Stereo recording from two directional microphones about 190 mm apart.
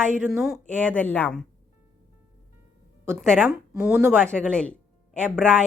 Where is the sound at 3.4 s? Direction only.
5° right (ahead or behind).